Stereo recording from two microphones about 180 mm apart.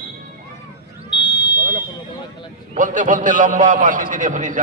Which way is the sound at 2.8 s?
45° right (ahead or behind).